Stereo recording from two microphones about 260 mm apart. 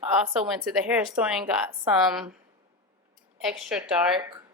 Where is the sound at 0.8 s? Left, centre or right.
Centre.